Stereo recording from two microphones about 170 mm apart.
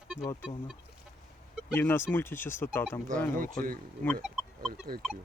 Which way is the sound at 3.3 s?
55° right (ahead or behind).